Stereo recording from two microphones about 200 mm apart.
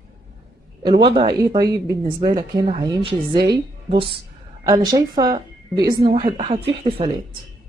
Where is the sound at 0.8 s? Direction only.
25° right (ahead or behind).